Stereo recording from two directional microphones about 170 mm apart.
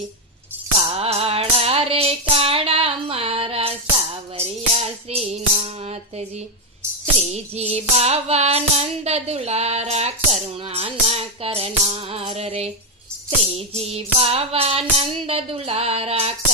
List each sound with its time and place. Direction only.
0.8 s music: 35° right (ahead or behind)